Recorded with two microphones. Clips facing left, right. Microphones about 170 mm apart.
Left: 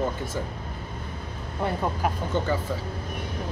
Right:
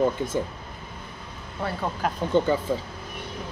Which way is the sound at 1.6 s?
15° left (ahead or behind).